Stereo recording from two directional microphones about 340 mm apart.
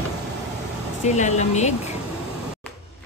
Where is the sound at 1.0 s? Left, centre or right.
Left.